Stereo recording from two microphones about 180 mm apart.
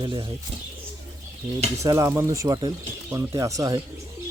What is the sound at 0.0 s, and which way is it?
Speech, 25° right (ahead or behind).